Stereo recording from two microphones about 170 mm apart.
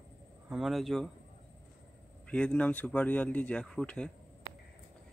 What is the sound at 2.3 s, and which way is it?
Speech, 5° left (ahead or behind).